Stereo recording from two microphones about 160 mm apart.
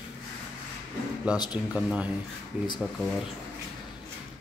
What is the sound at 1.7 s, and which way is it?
Speech, 5° right (ahead or behind).